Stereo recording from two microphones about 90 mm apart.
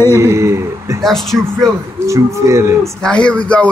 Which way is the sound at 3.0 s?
10° left (ahead or behind).